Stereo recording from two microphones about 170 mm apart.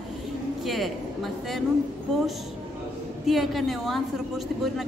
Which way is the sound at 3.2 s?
Centre (ahead or behind).